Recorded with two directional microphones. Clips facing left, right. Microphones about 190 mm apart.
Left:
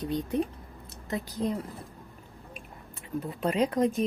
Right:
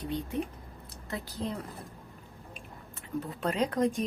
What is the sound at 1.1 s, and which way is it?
Speech, 15° left (ahead or behind).